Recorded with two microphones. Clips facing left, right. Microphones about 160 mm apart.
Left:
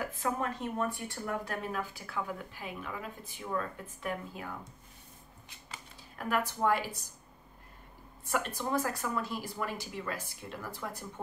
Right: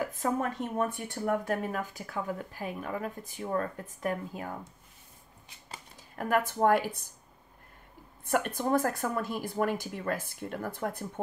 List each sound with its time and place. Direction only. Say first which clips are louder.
0.1 s speech: right 3 dB; 45° right (ahead or behind)
5.7 s speech: right 2 dB; 45° right (ahead or behind)
8.3 s speech: right 5 dB; 55° right (ahead or behind)